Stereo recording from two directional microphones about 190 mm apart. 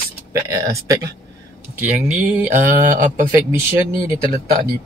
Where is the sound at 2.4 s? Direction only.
45° right (ahead or behind).